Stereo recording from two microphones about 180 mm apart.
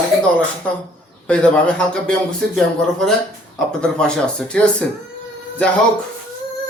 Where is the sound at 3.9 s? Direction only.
5° left (ahead or behind).